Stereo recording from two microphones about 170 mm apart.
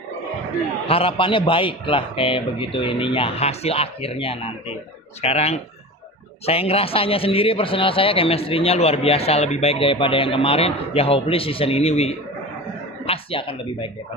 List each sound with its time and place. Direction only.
0.8 s a man's voice: 35° left (ahead or behind)